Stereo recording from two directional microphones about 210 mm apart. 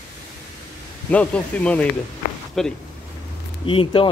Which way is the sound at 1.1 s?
5° left (ahead or behind).